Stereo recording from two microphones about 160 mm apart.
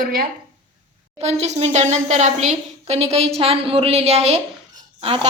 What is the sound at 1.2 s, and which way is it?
A woman's voice, 45° right (ahead or behind).